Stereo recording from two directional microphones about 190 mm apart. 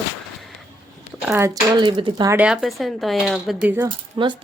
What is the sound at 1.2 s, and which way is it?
Speech, 5° right (ahead or behind).